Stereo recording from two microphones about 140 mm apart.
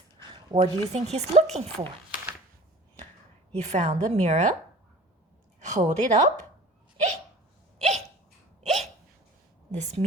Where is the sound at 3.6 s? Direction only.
55° right (ahead or behind).